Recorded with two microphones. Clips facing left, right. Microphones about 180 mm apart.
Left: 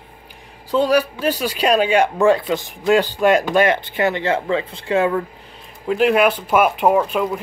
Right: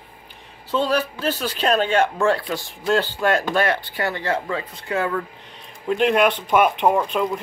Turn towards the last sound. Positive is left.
turn(degrees=5)  # may be behind; listen again after turning